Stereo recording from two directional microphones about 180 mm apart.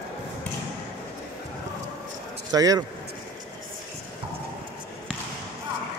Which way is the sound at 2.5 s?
20° right (ahead or behind).